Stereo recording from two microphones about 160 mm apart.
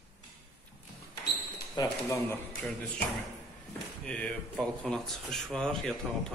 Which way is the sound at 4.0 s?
5° left (ahead or behind).